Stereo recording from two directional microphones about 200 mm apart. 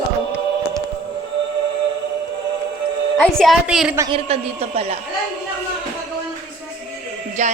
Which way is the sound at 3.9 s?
25° right (ahead or behind).